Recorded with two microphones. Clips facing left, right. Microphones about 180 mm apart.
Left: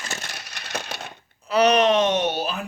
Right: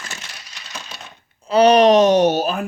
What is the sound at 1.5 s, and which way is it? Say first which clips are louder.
Speech: right 6 dB; 30° right (ahead or behind).